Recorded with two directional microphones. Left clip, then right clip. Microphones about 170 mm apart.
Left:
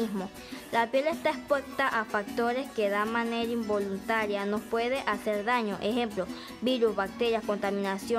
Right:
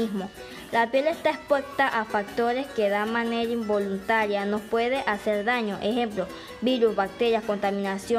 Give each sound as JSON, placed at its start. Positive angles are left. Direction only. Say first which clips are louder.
{"t": 0.7, "sound": "speech", "louder": "right 4 dB", "side_deg": 15}